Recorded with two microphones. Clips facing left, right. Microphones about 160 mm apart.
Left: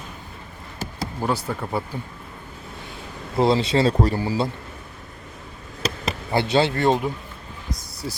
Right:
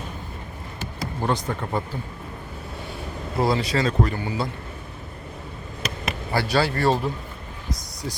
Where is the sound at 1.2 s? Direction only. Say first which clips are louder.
Even; 5° left (ahead or behind).